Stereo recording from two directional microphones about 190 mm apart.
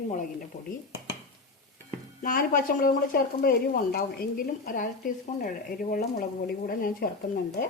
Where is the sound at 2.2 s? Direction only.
45° left (ahead or behind).